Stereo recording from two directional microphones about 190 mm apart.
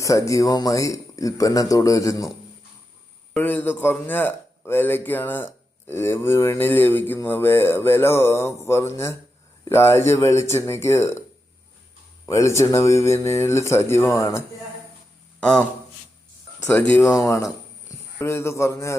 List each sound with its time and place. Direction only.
0.0 s speech: 15° left (ahead or behind)
3.3 s speech: 10° left (ahead or behind)
12.2 s speech: 15° left (ahead or behind)
15.4 s a man's voice: 5° left (ahead or behind)
16.6 s speech: 10° left (ahead or behind)